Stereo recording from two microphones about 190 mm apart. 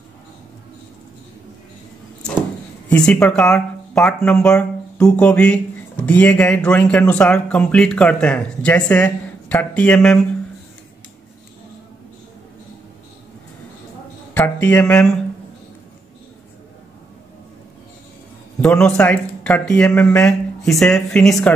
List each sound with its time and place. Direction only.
2.9 s speech: 5° left (ahead or behind)
14.3 s speech: 10° left (ahead or behind)
18.6 s speech: 5° left (ahead or behind)